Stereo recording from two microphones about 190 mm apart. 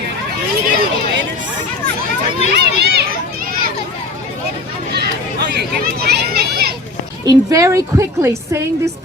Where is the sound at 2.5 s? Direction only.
60° right (ahead or behind).